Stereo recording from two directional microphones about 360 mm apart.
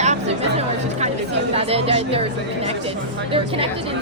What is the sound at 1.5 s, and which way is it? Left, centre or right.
Speech, centre.